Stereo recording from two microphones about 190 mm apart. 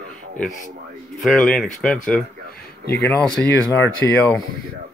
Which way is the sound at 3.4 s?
10° left (ahead or behind).